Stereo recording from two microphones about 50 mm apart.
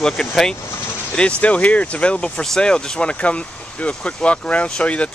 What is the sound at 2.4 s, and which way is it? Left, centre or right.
Speech, centre.